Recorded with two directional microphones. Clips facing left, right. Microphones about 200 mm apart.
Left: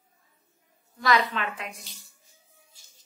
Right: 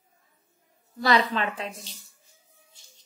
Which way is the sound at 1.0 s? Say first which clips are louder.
Right 2 dB; 35° right (ahead or behind).